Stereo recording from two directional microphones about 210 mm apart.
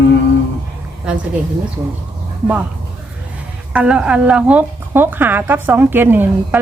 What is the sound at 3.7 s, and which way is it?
A woman's voice, 5° right (ahead or behind).